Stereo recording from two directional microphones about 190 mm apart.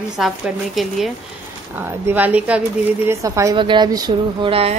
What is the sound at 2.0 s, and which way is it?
A woman's voice, 10° right (ahead or behind).